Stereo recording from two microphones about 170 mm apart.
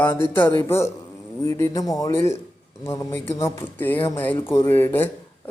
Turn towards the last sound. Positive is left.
turn(degrees=10)  # may be behind; listen again after turning